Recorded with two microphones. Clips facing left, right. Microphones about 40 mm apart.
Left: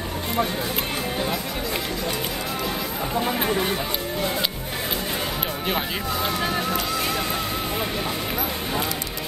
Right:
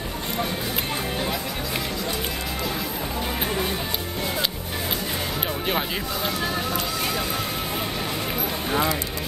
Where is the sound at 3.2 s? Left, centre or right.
Centre.